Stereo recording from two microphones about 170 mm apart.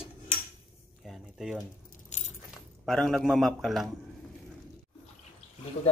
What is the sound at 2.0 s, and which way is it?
Keys jangling, 45° left (ahead or behind).